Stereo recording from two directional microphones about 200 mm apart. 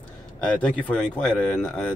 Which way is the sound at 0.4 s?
5° left (ahead or behind).